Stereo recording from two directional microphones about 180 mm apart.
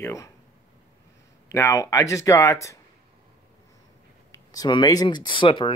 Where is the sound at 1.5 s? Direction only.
15° left (ahead or behind).